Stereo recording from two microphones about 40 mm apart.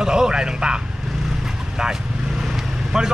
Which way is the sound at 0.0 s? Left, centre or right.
Centre.